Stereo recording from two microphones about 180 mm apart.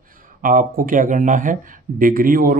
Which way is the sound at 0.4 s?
50° right (ahead or behind).